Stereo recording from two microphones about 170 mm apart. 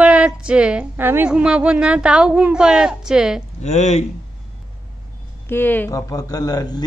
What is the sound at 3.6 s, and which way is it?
Speech, 40° left (ahead or behind).